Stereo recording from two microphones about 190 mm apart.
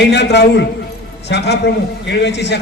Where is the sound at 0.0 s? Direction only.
60° left (ahead or behind).